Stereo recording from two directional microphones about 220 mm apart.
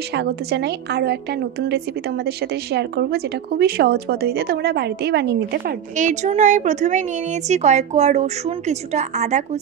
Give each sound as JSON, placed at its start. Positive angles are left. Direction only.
{"t": 0.1, "sound": "a woman's voice", "side_deg": -50}
{"t": 5.9, "sound": "a woman's voice", "side_deg": -35}